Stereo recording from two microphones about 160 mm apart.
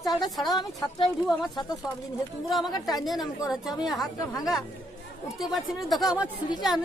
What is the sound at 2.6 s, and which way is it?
Speech, 25° left (ahead or behind).